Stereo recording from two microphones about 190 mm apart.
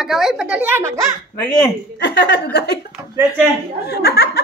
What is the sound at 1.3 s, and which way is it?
Speech, 15° left (ahead or behind).